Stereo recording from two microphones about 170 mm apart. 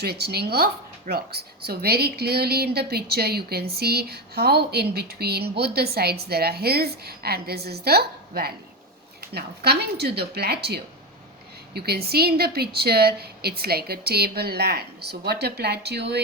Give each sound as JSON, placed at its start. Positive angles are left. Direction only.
{"t": 0.0, "sound": "a woman's voice", "side_deg": -70}